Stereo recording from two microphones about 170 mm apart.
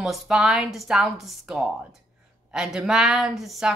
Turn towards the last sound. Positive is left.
turn(degrees=0)  # may be behind; listen again after turning